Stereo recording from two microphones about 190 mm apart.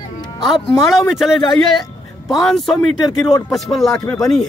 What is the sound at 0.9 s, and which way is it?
Speech, centre (ahead or behind).